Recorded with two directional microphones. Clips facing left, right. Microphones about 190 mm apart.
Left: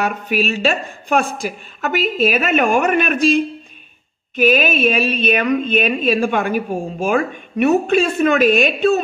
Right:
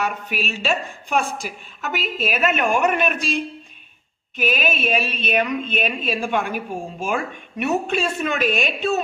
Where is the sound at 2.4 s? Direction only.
60° left (ahead or behind).